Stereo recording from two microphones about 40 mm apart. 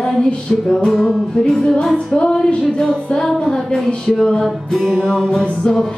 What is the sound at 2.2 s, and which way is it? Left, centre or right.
Music, centre.